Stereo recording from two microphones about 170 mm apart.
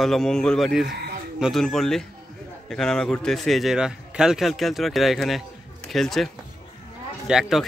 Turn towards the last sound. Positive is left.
turn(degrees=-5)  # may be behind; listen again after turning